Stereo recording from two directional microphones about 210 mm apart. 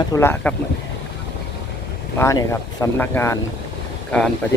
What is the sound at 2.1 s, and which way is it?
Speech, 15° left (ahead or behind).